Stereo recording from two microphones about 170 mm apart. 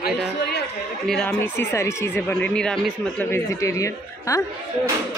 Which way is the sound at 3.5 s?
20° left (ahead or behind).